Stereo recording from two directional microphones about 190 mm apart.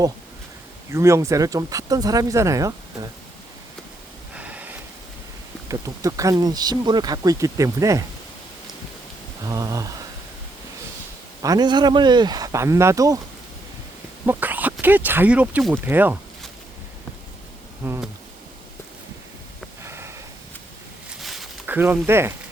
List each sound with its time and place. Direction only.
0.9 s speech: 15° right (ahead or behind)
4.4 s snort: 10° right (ahead or behind)
5.6 s speech: 15° right (ahead or behind)
9.5 s speech: 20° right (ahead or behind)
11.4 s speech: 20° right (ahead or behind)
14.3 s speech: 10° right (ahead or behind)
17.8 s speech: 10° right (ahead or behind)
19.8 s sniff: 15° right (ahead or behind)
21.2 s a sound: centre (ahead or behind)